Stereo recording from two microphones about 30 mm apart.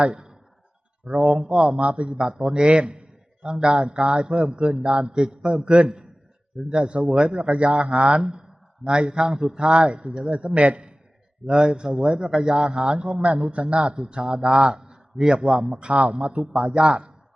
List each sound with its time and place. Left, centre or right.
0.0 s a man's voice: right
2.1 s a man's voice: right
8.2 s a man's voice: right
13.7 s a man's voice: right
15.9 s a man's voice: right
16.1 s a man's voice: right